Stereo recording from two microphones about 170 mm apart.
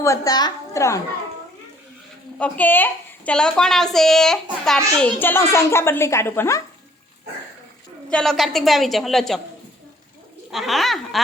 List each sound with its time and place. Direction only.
0.0 s a child's voice: 20° left (ahead or behind)
2.4 s a woman's voice: 10° left (ahead or behind)
8.1 s a woman's voice: centre (ahead or behind)
10.5 s a woman's voice: centre (ahead or behind)